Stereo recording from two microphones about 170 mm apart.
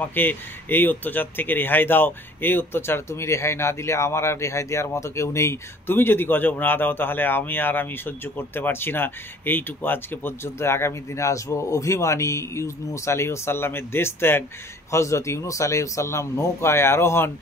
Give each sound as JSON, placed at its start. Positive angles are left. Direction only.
{"t": 0.1, "sound": "speech", "side_deg": 10}